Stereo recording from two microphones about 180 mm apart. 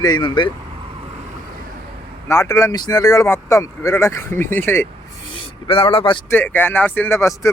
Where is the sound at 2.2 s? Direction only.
15° left (ahead or behind).